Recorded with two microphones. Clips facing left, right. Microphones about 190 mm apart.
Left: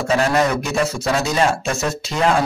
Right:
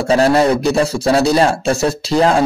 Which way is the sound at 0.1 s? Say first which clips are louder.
Right 6 dB; 35° right (ahead or behind).